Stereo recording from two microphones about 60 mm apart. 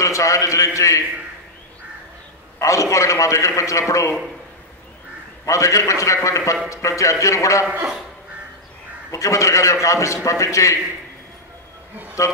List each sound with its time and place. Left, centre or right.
0.0 s a man's voice: left
2.6 s a man's voice: left
5.4 s a man's voice: left
9.1 s a man's voice: left
12.2 s a man's voice: left